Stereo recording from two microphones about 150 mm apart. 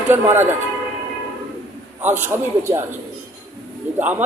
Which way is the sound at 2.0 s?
15° right (ahead or behind).